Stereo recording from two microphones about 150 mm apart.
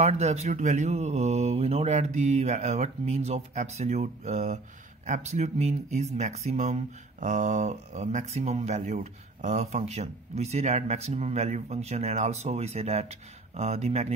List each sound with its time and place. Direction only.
0.0 s speech: 45° right (ahead or behind)